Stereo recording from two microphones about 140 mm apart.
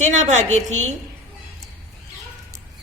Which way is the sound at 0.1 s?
55° right (ahead or behind).